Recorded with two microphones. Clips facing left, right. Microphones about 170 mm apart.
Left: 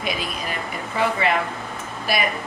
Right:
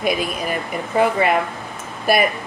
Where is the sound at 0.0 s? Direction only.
55° right (ahead or behind).